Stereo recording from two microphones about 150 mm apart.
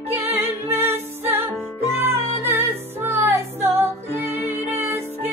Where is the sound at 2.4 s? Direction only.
15° right (ahead or behind).